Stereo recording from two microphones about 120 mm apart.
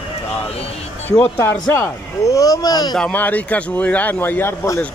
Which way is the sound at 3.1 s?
15° left (ahead or behind).